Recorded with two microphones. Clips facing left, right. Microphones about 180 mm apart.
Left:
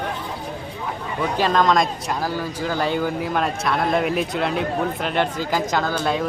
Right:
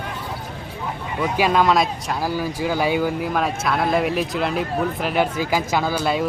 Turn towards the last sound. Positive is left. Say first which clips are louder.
# right 1 dB
turn(degrees=-5)  # may be behind; listen again after turning